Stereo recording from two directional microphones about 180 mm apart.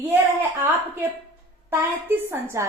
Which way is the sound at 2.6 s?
15° right (ahead or behind).